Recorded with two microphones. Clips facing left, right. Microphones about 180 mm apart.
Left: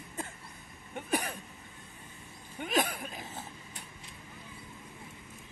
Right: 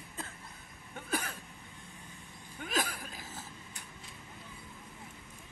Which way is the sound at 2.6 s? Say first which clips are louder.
Left 5 dB; 20° left (ahead or behind).